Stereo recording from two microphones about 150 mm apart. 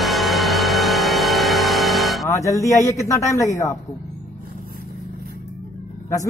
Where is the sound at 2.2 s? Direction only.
20° left (ahead or behind).